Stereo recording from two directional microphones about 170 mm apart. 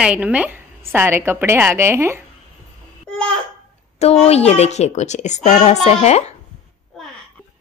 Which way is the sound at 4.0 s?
40° left (ahead or behind).